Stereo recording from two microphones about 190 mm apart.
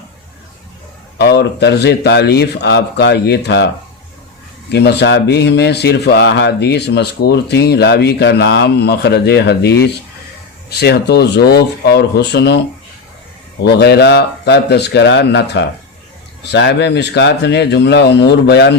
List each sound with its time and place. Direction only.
1.2 s speech: 60° left (ahead or behind)
4.7 s speech: 60° left (ahead or behind)